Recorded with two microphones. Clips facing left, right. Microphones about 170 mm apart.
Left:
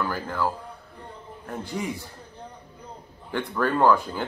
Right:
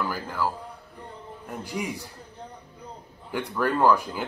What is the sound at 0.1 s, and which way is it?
Speech, 5° right (ahead or behind).